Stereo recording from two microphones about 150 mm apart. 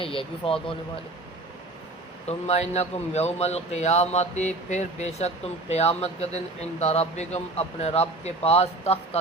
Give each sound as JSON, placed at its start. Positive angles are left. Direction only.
{"t": 0.0, "sound": "speech", "side_deg": 35}
{"t": 2.2, "sound": "a man's voice", "side_deg": 45}